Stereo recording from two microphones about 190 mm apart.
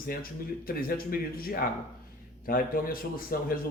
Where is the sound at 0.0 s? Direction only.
50° left (ahead or behind).